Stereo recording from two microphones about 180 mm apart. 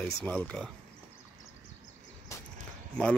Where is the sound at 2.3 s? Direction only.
15° left (ahead or behind).